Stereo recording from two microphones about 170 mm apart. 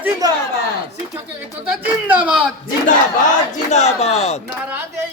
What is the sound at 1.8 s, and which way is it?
Speech, 10° right (ahead or behind).